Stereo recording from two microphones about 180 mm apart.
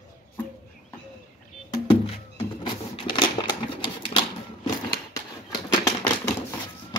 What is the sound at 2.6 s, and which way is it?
Typewriter, 30° left (ahead or behind).